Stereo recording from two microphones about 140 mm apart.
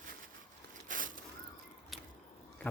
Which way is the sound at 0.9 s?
70° right (ahead or behind).